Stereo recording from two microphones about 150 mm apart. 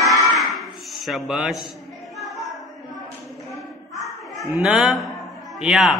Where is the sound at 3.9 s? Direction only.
Centre (ahead or behind).